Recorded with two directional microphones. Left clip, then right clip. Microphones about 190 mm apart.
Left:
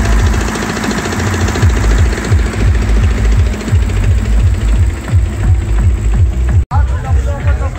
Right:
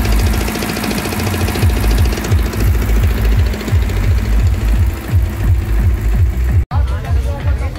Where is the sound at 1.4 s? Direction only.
40° right (ahead or behind).